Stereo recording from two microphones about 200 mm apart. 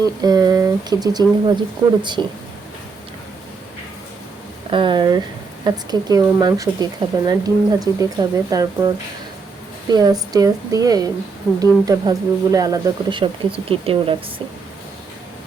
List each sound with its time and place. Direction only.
0.0 s speech: 20° right (ahead or behind)
4.7 s speech: 25° right (ahead or behind)
9.9 s speech: 20° right (ahead or behind)